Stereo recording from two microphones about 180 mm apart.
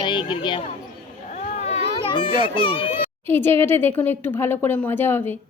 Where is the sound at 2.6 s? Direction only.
30° left (ahead or behind).